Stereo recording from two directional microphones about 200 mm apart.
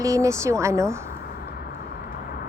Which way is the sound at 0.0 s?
15° right (ahead or behind).